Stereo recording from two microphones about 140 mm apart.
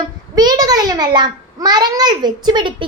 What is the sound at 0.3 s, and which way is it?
A child's voice, 30° right (ahead or behind).